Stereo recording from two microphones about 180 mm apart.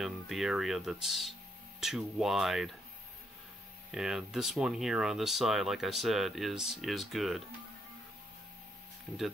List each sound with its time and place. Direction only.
0.0 s speech: centre (ahead or behind)
3.9 s speech: 5° right (ahead or behind)